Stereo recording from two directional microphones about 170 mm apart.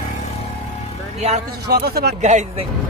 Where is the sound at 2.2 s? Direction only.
45° right (ahead or behind).